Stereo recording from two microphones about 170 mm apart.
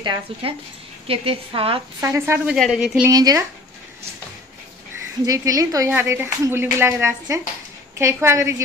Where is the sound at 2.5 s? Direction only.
Centre (ahead or behind).